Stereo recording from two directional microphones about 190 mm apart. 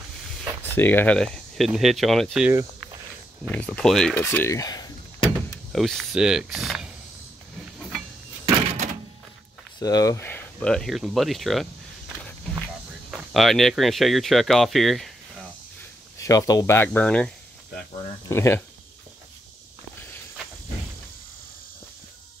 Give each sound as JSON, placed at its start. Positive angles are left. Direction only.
{"t": 0.7, "sound": "speech", "side_deg": 10}
{"t": 5.7, "sound": "speech", "side_deg": 0}
{"t": 8.5, "sound": "door", "side_deg": -40}
{"t": 9.8, "sound": "speech", "side_deg": 20}
{"t": 13.1, "sound": "speech", "side_deg": 0}
{"t": 16.2, "sound": "speech", "side_deg": 20}
{"t": 18.3, "sound": "speech", "side_deg": 15}